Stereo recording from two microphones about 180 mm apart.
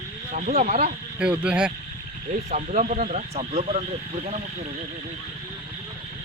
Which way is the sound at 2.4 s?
40° right (ahead or behind).